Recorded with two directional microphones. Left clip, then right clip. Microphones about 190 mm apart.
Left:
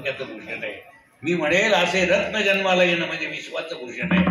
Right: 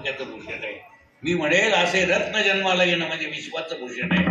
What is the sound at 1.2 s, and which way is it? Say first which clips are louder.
A man's voice: left 1 dB; 10° right (ahead or behind).